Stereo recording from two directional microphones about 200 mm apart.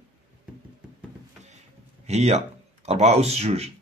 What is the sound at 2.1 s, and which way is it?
Speech, 35° right (ahead or behind).